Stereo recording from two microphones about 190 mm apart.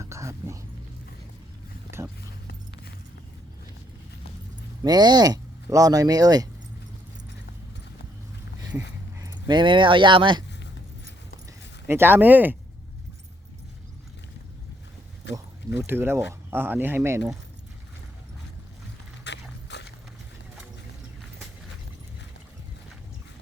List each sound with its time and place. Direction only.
0.0 s music: 15° right (ahead or behind)
4.8 s speech: 20° right (ahead or behind)
9.1 s speech: 20° right (ahead or behind)
11.9 s speech: 10° right (ahead or behind)
15.2 s a sound: 65° left (ahead or behind)
15.9 s speech: 10° right (ahead or behind)
19.2 s dog: 65° left (ahead or behind)